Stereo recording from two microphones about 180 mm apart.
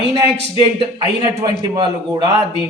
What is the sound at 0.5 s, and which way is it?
A man's voice, 30° right (ahead or behind).